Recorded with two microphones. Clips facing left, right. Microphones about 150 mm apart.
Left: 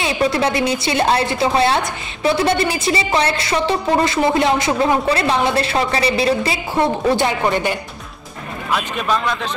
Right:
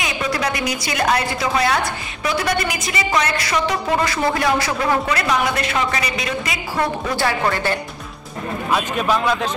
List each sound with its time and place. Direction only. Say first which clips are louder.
0.0 s a woman's voice: left 5 dB; 30° left (ahead or behind)
8.7 s a man's voice: even; 10° right (ahead or behind)